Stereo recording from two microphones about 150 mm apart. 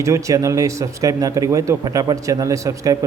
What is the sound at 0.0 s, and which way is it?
A man's voice, 20° right (ahead or behind).